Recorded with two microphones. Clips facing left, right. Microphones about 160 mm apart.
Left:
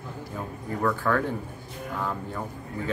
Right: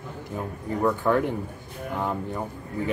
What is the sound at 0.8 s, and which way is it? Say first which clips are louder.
Speech: right 3 dB; 20° right (ahead or behind).